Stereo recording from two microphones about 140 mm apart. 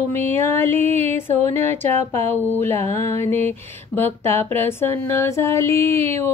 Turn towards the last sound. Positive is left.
turn(degrees=15)  # may be behind; listen again after turning